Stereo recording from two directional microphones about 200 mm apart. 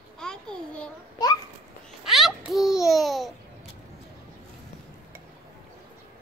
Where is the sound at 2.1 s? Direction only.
Centre (ahead or behind).